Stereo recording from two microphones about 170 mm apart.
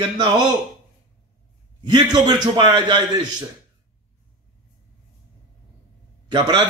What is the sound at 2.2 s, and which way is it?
Speech, 25° right (ahead or behind).